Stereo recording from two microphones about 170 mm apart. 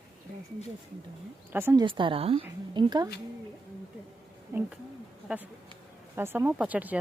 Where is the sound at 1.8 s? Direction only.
30° right (ahead or behind).